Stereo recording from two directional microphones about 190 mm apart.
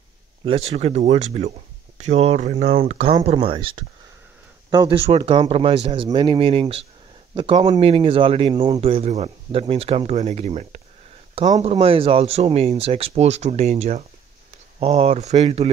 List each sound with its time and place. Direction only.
0.5 s speech: 30° right (ahead or behind)